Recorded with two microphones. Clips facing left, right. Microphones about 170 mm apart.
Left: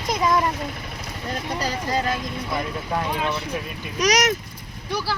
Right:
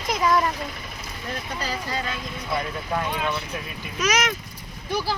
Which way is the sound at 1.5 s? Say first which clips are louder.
Left 5 dB; 40° left (ahead or behind).